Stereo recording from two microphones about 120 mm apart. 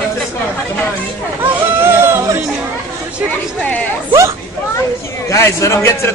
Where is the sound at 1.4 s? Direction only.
20° right (ahead or behind).